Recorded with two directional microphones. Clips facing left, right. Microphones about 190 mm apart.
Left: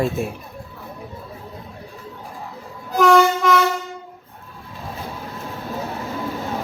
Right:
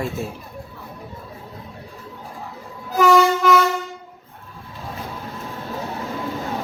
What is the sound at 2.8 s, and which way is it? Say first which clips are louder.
Train: left 1 dB; 5° right (ahead or behind).